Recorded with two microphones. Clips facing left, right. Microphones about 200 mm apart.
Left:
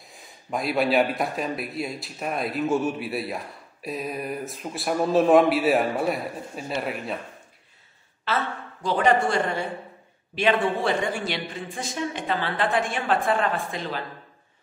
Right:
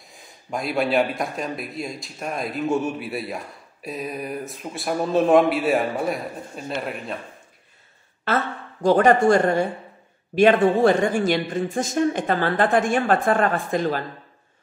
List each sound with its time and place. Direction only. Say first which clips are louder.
0.0 s speech: even; centre (ahead or behind)
8.3 s a woman's voice: right 3 dB; 50° right (ahead or behind)